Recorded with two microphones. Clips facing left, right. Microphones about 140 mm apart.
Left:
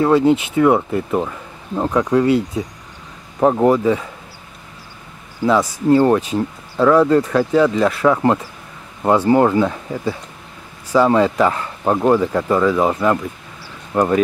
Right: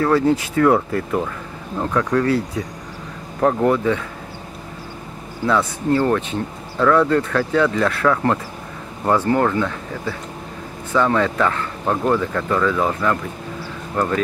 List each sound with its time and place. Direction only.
0.0 s speech: 20° left (ahead or behind)
5.5 s speech: 35° left (ahead or behind)
5.9 s speech: 15° left (ahead or behind)
7.5 s speech: 30° left (ahead or behind)
7.8 s speech: 15° left (ahead or behind)
11.3 s speech: 15° left (ahead or behind)